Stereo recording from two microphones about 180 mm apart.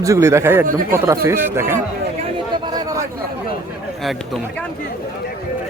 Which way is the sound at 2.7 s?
20° right (ahead or behind).